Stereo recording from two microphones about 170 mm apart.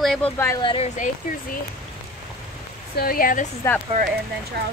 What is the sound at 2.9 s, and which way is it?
Speech, 60° left (ahead or behind).